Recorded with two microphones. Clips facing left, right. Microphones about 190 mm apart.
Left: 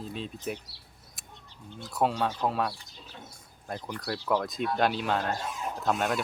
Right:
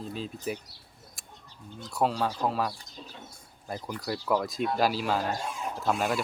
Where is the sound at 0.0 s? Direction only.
Centre (ahead or behind).